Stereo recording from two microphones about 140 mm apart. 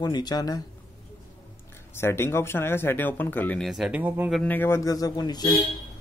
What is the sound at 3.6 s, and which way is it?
Speech, 5° right (ahead or behind).